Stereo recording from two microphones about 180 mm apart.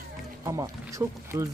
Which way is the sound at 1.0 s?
15° right (ahead or behind).